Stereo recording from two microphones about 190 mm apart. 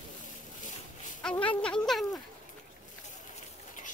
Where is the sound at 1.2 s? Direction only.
5° left (ahead or behind).